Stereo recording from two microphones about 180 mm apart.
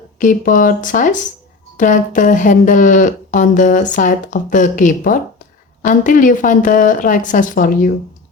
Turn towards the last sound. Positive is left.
turn(degrees=50)  # may be behind; listen again after turning